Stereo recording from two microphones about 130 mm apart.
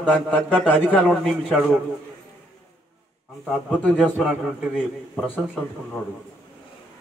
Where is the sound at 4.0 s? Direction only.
5° right (ahead or behind).